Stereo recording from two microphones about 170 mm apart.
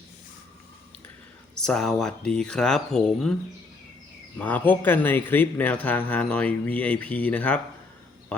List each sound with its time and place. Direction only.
1.6 s speech: 5° left (ahead or behind)
4.4 s a man's voice: 10° left (ahead or behind)